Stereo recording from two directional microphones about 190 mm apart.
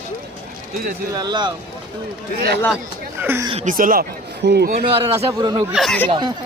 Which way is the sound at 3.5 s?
40° right (ahead or behind).